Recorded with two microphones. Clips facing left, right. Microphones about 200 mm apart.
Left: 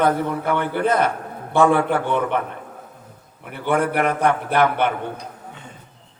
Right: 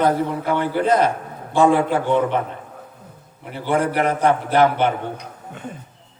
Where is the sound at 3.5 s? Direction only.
55° left (ahead or behind).